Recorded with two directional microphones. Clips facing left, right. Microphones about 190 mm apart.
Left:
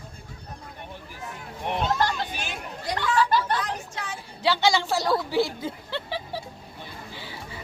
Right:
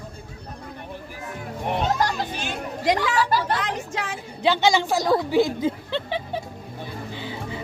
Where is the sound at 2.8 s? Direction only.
90° right.